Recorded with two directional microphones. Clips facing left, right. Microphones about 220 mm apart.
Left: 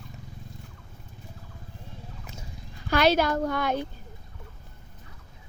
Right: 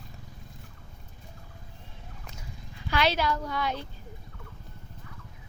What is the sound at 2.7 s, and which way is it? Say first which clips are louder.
Speech: left 5 dB; 45° left (ahead or behind).